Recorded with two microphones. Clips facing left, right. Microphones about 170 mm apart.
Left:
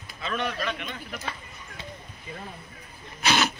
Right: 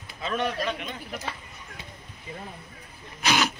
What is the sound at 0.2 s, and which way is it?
Speech, 35° right (ahead or behind).